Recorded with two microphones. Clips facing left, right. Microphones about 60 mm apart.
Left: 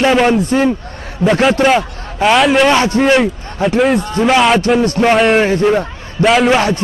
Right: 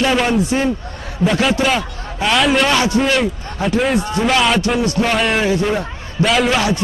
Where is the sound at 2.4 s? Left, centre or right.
Centre.